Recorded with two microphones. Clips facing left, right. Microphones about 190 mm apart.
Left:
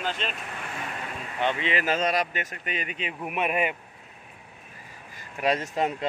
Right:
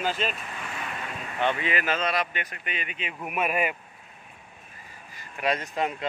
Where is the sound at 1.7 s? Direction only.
35° left (ahead or behind).